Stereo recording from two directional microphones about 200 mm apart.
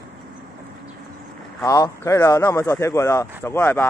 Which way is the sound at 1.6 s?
15° left (ahead or behind).